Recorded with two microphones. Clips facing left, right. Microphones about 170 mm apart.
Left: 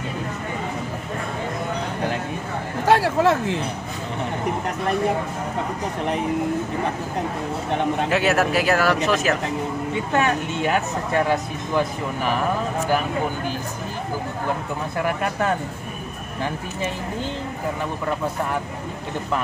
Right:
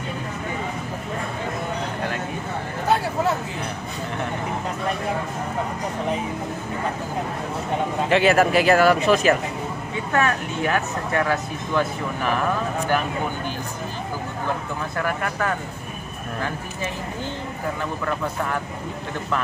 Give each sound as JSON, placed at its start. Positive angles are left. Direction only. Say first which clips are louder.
{"t": 2.9, "sound": "a sound", "louder": "left 4 dB", "side_deg": 80}
{"t": 8.1, "sound": "speech", "louder": "right 5 dB", "side_deg": 0}
{"t": 10.1, "sound": "speech", "louder": "even", "side_deg": 20}
{"t": 15.0, "sound": "speech", "louder": "left 2 dB", "side_deg": 20}